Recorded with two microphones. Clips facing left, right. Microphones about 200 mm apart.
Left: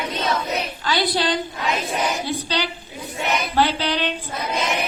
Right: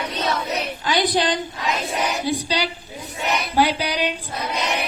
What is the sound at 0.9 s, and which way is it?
A woman's voice, 20° right (ahead or behind).